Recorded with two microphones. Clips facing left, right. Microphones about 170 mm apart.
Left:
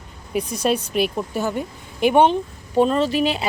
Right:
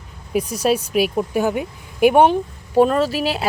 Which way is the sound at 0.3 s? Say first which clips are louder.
Right 2 dB; 10° right (ahead or behind).